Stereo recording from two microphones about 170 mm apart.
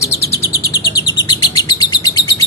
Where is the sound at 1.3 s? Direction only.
25° left (ahead or behind).